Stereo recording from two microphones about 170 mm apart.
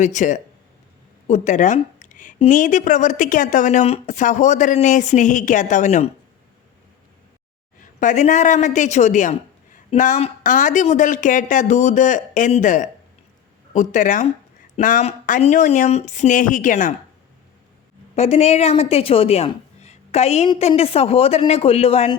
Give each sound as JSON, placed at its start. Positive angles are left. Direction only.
{"t": 0.0, "sound": "a woman's voice", "side_deg": 45}
{"t": 7.8, "sound": "a woman's voice", "side_deg": 45}
{"t": 18.1, "sound": "a woman's voice", "side_deg": 40}